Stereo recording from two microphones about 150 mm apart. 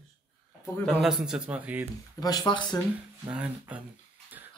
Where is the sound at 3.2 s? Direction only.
10° right (ahead or behind).